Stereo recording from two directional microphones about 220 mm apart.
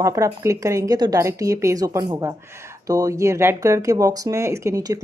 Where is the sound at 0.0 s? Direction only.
15° right (ahead or behind).